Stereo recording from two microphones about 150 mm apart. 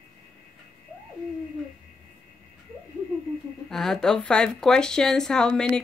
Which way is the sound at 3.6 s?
Centre (ahead or behind).